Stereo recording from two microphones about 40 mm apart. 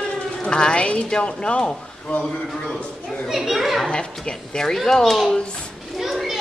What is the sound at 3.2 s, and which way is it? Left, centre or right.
Speech, centre.